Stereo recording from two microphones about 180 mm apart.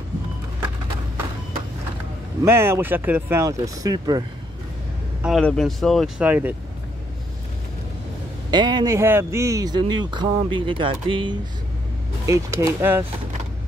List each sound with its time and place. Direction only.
2.4 s speech: 15° right (ahead or behind)
5.2 s speech: centre (ahead or behind)
8.5 s speech: 25° right (ahead or behind)
12.3 s speech: 15° right (ahead or behind)